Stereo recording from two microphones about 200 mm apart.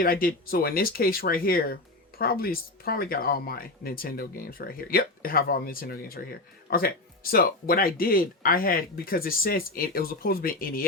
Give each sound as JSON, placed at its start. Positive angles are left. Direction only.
{"t": 0.0, "sound": "speech", "side_deg": 45}